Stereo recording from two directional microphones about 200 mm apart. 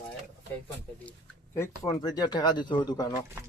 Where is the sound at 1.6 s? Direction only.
20° left (ahead or behind).